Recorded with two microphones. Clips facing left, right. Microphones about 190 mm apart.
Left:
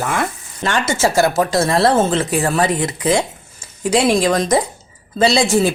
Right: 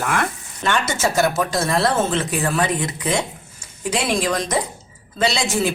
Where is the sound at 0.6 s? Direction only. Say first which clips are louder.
Left 3 dB; 30° left (ahead or behind).